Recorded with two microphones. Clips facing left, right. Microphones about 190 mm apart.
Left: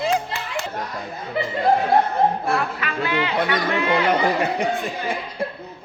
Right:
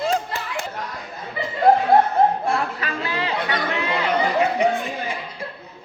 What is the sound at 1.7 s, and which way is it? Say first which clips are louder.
Chuckle: right 3 dB; 50° right (ahead or behind).